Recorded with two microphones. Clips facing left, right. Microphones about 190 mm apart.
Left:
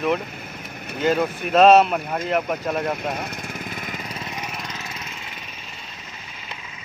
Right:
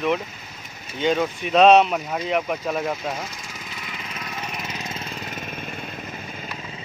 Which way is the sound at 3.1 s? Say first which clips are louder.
Left 4 dB; 60° left (ahead or behind).